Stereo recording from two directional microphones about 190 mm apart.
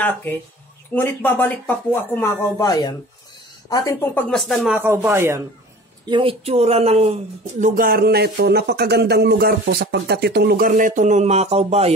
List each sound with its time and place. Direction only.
0.0 s speech: 10° left (ahead or behind)
4.3 s speech: centre (ahead or behind)
4.8 s speech: 15° right (ahead or behind)
6.0 s speech: 25° right (ahead or behind)
7.6 s speech: 45° right (ahead or behind)